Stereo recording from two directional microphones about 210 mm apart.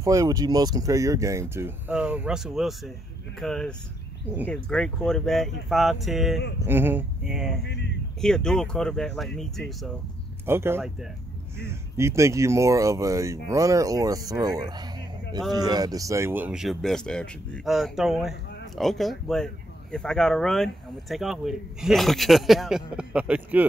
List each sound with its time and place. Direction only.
0.0 s speech: 15° right (ahead or behind)
7.6 s speech: 55° left (ahead or behind)
8.2 s speech: 5° left (ahead or behind)
10.4 s speech: 10° right (ahead or behind)